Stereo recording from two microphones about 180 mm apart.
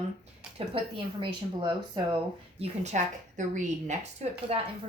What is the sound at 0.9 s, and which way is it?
A woman's voice, 25° right (ahead or behind).